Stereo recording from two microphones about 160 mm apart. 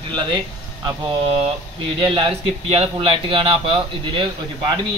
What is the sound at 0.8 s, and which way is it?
A man's voice, 35° right (ahead or behind).